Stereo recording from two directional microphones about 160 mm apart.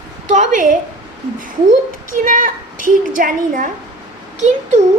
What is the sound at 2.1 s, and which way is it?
A woman's voice, 55° right (ahead or behind).